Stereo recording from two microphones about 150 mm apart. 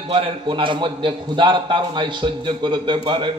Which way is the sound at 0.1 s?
35° right (ahead or behind).